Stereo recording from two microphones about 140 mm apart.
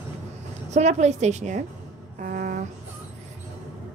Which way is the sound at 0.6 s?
55° right (ahead or behind).